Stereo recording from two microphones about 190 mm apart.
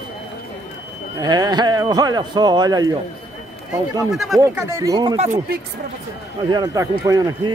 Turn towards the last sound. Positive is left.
turn(degrees=-20)  # may be behind; listen again after turning